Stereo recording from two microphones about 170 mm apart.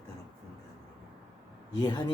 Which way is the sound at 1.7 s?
25° left (ahead or behind).